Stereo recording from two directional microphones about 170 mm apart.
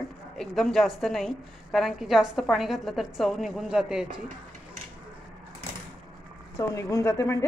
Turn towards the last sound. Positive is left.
turn(degrees=15)  # may be behind; listen again after turning